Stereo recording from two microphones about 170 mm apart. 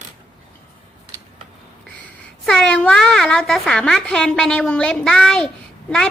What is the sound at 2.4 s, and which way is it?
A woman's voice, 5° left (ahead or behind).